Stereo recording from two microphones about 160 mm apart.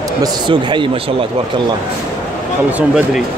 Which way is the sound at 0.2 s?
30° right (ahead or behind).